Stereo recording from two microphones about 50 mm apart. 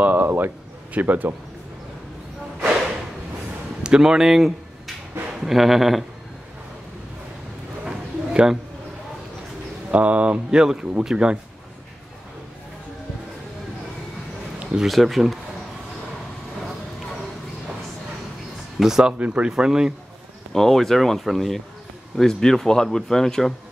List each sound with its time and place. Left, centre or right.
0.0 s a sound: right
0.9 s a man's voice: right
3.8 s speech: centre
7.8 s a sound: centre
9.8 s speech: right
14.9 s speech: centre
18.8 s speech: centre
19.1 s speech: right
19.5 s speech: centre
20.5 s speech: centre